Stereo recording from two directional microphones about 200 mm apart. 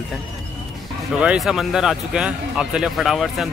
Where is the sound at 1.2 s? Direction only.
5° right (ahead or behind).